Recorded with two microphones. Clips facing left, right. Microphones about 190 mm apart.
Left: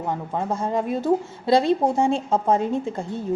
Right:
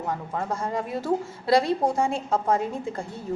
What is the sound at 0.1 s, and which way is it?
A woman's voice, 20° left (ahead or behind).